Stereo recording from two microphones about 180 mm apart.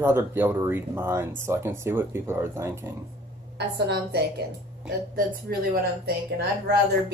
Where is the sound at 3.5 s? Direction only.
65° right (ahead or behind).